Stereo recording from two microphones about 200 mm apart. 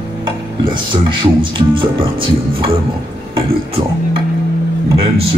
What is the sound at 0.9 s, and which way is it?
Speech, 25° right (ahead or behind).